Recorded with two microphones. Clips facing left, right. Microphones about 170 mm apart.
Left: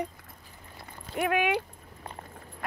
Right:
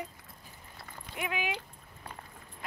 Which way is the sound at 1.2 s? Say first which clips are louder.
Left 9 dB; 60° left (ahead or behind).